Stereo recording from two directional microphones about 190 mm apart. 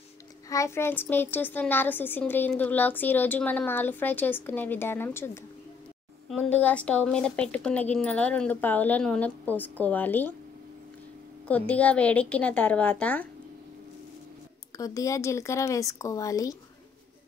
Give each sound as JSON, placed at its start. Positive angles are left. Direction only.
{"t": 0.5, "sound": "a woman's voice", "side_deg": 15}
{"t": 11.4, "sound": "a woman's voice", "side_deg": 10}
{"t": 14.8, "sound": "a woman's voice", "side_deg": 15}